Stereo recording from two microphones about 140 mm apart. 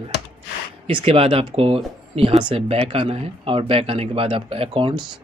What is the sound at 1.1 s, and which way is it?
Speech, 45° right (ahead or behind).